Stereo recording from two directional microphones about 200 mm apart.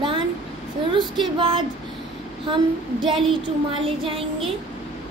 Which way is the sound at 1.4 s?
25° right (ahead or behind).